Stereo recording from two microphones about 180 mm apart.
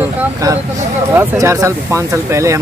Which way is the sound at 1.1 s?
15° right (ahead or behind).